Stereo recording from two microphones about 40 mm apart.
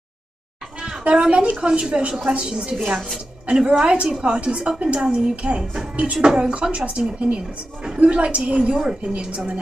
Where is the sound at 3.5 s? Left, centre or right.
Right.